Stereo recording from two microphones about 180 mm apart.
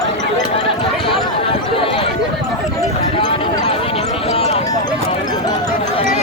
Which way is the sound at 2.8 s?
25° left (ahead or behind).